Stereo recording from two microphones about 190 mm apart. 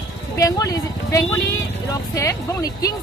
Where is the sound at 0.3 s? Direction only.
15° left (ahead or behind).